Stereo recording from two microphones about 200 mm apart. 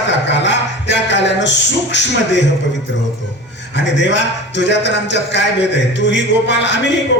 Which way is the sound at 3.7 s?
60° left (ahead or behind).